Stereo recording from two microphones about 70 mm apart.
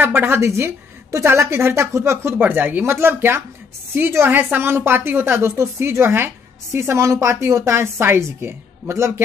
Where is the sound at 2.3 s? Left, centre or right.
Right.